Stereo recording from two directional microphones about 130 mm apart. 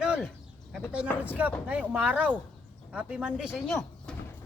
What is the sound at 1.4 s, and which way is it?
Speech, 10° right (ahead or behind).